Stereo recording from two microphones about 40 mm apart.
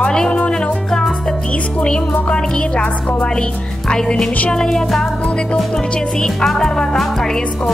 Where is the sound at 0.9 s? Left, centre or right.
Centre.